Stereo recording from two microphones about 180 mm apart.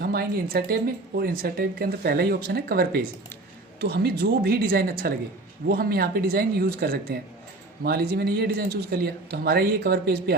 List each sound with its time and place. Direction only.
0.0 s speech: 55° right (ahead or behind)